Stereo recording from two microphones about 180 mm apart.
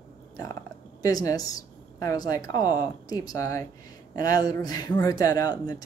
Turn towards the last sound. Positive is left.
turn(degrees=20)  # may be behind; listen again after turning